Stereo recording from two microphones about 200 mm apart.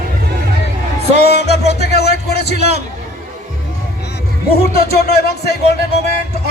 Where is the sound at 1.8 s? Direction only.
55° left (ahead or behind).